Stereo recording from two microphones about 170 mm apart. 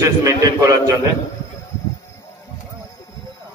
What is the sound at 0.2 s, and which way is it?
Speech, 20° right (ahead or behind).